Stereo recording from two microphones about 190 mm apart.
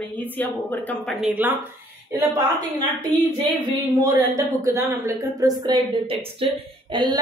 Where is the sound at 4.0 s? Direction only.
20° right (ahead or behind).